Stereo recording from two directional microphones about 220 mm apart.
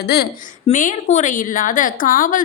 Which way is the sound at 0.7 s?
35° left (ahead or behind).